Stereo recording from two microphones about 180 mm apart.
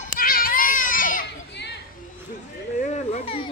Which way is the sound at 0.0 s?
50° left (ahead or behind).